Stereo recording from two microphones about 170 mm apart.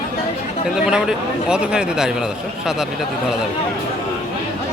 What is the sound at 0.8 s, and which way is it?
Speech, 5° right (ahead or behind).